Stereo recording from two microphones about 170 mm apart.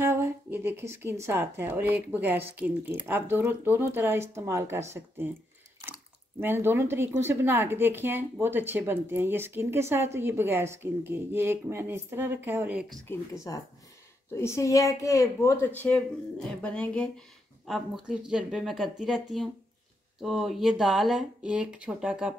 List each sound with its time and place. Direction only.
0.0 s a woman's voice: 15° right (ahead or behind)
6.4 s a woman's voice: 15° right (ahead or behind)
13.1 s speech: 20° left (ahead or behind); by 22.3 s 5° right (ahead or behind)